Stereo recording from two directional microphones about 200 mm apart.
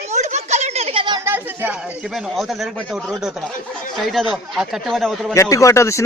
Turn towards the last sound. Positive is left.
turn(degrees=15)  # may be behind; listen again after turning